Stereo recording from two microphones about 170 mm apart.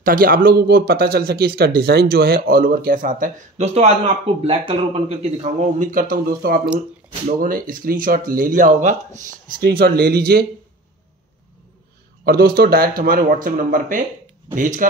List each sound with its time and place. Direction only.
0.0 s speech: 55° right (ahead or behind)
9.6 s speech: 65° right (ahead or behind)
12.3 s speech: 65° right (ahead or behind)